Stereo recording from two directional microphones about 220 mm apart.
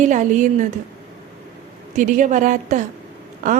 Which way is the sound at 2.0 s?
35° right (ahead or behind).